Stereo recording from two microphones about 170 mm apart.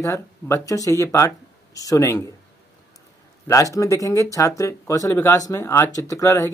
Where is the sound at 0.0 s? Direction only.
20° left (ahead or behind).